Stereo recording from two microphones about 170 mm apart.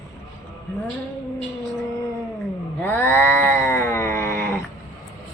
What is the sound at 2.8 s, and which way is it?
Cat, 10° left (ahead or behind).